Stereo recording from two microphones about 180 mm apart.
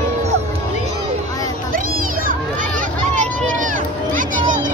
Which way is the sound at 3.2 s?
45° right (ahead or behind).